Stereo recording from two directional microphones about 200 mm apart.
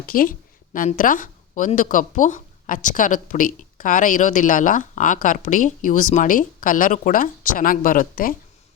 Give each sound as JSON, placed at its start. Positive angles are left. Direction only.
{"t": 0.0, "sound": "a woman's voice", "side_deg": 45}